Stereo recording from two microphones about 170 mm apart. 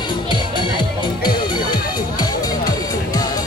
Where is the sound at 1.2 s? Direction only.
25° left (ahead or behind).